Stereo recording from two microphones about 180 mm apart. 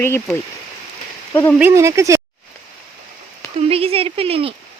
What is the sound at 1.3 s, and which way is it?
Speech, 15° left (ahead or behind).